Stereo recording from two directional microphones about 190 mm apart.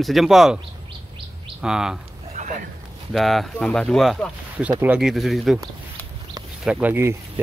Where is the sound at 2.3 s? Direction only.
40° right (ahead or behind).